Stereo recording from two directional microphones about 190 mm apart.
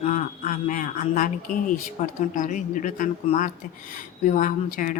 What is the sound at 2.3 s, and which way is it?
A woman's voice, 45° left (ahead or behind).